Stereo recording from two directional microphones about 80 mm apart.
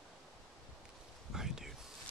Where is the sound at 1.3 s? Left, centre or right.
Centre.